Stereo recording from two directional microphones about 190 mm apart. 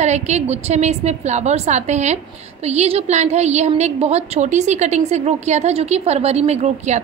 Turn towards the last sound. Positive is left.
turn(degrees=-35)  # may be behind; listen again after turning